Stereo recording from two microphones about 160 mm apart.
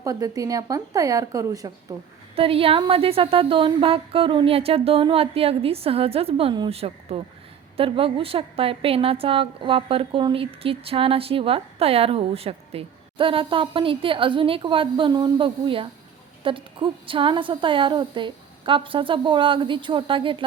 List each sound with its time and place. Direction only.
0.0 s a woman's voice: 20° right (ahead or behind)
2.3 s a woman's voice: 35° right (ahead or behind)